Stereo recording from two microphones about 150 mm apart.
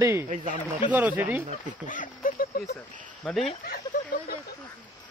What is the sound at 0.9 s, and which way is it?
Speech, 10° right (ahead or behind).